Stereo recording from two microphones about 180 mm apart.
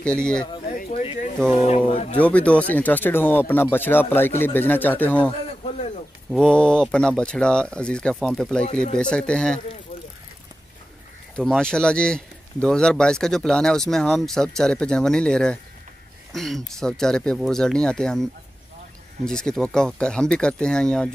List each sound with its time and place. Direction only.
0.0 s speech: 5° left (ahead or behind)
0.7 s a sound: 50° left (ahead or behind)
1.6 s speech: 35° left (ahead or behind)
2.1 s speech: 10° left (ahead or behind)
5.5 s a sound: 35° left (ahead or behind)
6.3 s speech: 5° left (ahead or behind)
11.3 s speech: 5° left (ahead or behind)